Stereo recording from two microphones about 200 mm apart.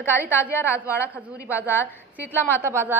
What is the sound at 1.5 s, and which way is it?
A woman's voice, 10° right (ahead or behind).